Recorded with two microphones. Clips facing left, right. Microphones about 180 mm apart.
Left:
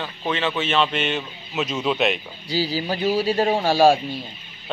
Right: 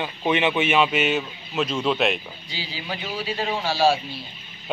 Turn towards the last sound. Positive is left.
turn(degrees=50)  # may be behind; listen again after turning